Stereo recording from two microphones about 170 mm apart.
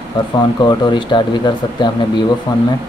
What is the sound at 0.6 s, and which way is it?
Speech, 25° left (ahead or behind).